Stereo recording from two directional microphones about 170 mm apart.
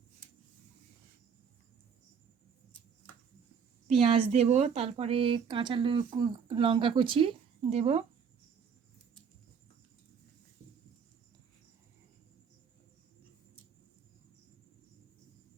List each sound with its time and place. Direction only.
4.0 s speech: 40° right (ahead or behind)